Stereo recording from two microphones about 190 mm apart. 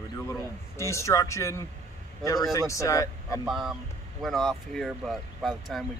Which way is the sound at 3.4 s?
Centre (ahead or behind).